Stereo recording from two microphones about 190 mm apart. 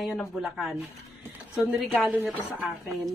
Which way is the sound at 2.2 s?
Centre (ahead or behind).